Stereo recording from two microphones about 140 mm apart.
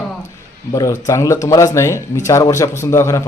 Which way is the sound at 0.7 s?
25° left (ahead or behind).